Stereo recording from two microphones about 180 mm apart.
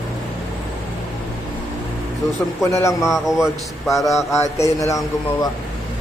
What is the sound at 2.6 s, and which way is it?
Speech, 15° left (ahead or behind).